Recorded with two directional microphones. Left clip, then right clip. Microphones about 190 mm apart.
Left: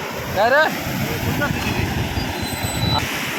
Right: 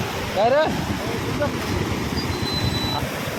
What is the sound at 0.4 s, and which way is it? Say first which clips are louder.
Speech: left 3 dB; 20° right (ahead or behind).